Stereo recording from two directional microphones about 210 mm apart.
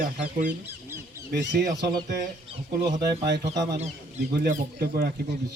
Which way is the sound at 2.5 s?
20° right (ahead or behind).